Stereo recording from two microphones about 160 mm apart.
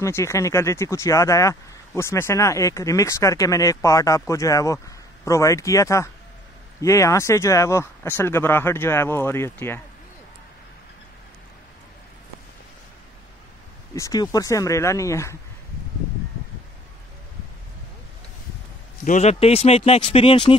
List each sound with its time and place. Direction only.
0.0 s speech: 20° left (ahead or behind)
13.9 s speech: 20° left (ahead or behind)
19.0 s speech: 45° left (ahead or behind)